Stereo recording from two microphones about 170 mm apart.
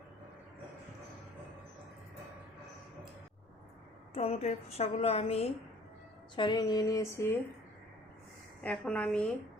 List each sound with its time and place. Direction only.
4.1 s a woman's voice: 35° left (ahead or behind)
6.3 s a sound: 25° left (ahead or behind)
8.6 s a woman's voice: 5° left (ahead or behind)